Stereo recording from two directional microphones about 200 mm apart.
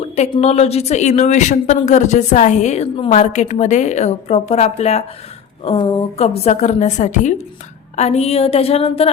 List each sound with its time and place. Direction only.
0.2 s a woman's voice: 30° left (ahead or behind)